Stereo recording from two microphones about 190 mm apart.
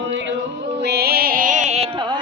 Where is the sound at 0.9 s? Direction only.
55° right (ahead or behind); by 1.8 s 40° right (ahead or behind).